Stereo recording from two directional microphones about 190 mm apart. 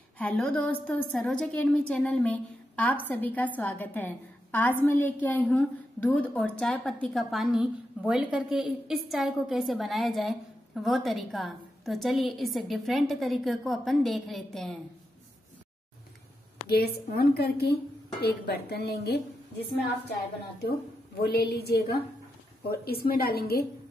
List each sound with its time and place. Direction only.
0.2 s a woman's voice: 5° left (ahead or behind)
16.6 s a woman's voice: 55° left (ahead or behind)
21.2 s a woman's voice: 55° left (ahead or behind)